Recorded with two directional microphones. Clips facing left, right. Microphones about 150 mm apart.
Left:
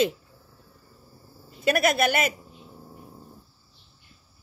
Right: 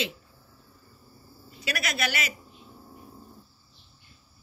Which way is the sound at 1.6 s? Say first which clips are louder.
Left 10 dB; 50° left (ahead or behind).